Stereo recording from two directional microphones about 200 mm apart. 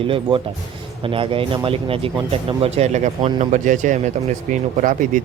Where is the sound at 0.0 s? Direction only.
25° right (ahead or behind).